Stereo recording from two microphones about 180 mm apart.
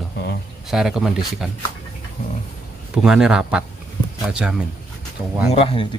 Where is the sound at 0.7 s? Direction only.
Centre (ahead or behind).